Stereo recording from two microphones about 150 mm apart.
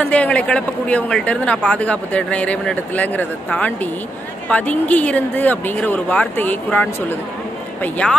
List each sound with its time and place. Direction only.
0.0 s a man's voice: 10° left (ahead or behind)